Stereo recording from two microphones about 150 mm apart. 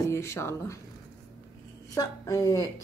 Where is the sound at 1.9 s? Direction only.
20° left (ahead or behind).